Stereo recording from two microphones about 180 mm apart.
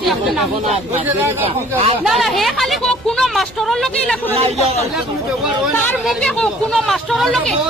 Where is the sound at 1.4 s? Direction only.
35° right (ahead or behind).